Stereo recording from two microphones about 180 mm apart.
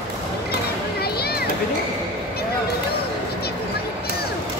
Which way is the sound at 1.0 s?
60° left (ahead or behind).